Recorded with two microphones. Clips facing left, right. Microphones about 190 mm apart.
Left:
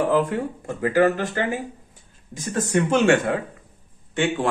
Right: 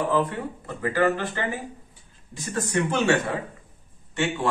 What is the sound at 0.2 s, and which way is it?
Speech, 45° left (ahead or behind).